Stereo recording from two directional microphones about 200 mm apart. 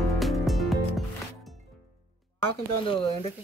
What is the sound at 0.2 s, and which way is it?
Music, centre (ahead or behind).